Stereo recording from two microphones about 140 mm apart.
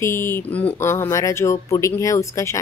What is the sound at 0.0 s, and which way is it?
Speech, 15° left (ahead or behind).